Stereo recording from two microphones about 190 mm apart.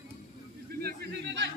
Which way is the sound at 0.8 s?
65° right (ahead or behind).